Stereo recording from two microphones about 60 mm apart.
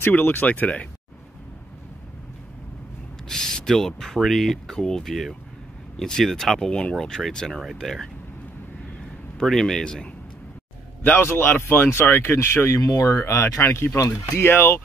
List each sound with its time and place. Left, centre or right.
0.0 s speech: left
3.3 s speech: centre
6.7 s speech: centre
9.4 s speech: centre
11.2 s speech: left
12.8 s speech: left
13.2 s speech: left